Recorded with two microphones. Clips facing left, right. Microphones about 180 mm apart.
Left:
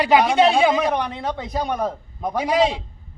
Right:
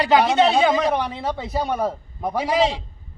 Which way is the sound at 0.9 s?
5° right (ahead or behind).